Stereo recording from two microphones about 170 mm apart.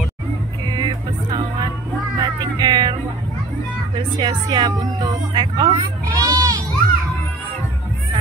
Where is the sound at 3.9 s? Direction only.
25° right (ahead or behind).